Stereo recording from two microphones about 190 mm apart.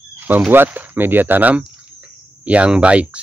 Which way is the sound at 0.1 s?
10° right (ahead or behind).